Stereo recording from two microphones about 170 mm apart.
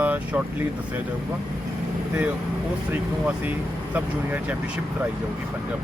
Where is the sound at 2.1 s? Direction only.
10° right (ahead or behind).